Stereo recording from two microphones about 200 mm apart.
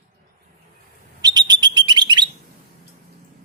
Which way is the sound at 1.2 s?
20° right (ahead or behind).